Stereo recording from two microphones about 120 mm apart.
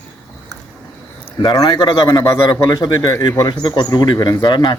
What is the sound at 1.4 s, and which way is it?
Speech, 35° left (ahead or behind).